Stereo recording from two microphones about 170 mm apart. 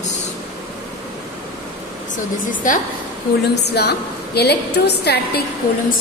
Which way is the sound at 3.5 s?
75° left (ahead or behind).